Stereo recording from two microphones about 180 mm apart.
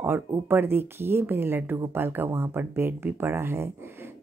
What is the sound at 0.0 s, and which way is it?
A woman's voice, 10° right (ahead or behind).